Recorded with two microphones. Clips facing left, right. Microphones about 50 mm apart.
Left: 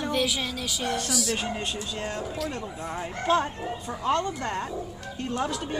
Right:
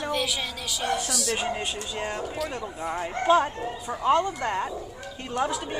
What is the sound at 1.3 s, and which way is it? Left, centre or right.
Speech, centre.